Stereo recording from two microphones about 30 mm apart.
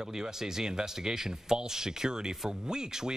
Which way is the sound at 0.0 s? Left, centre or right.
Right.